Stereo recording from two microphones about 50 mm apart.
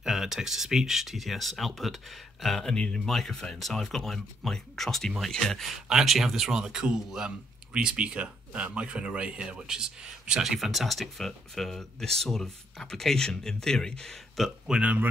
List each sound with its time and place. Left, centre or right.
0.0 s speech: centre
5.7 s speech: centre
10.4 s speech: centre
14.4 s speech: centre
14.8 s speech: right